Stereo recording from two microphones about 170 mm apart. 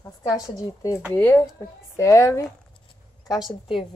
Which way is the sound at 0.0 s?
20° left (ahead or behind).